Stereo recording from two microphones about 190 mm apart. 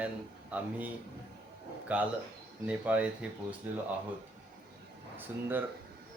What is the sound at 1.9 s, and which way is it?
A man's voice, 5° right (ahead or behind).